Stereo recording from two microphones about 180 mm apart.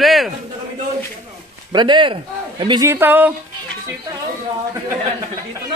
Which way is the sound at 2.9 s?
10° right (ahead or behind).